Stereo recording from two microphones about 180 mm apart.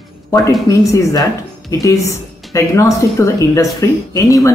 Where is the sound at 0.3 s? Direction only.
20° left (ahead or behind).